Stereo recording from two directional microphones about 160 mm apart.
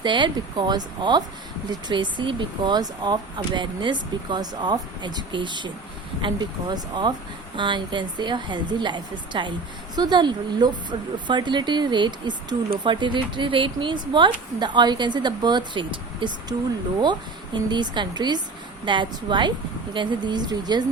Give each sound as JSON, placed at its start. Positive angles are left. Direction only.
{"t": 0.0, "sound": "speech", "side_deg": -30}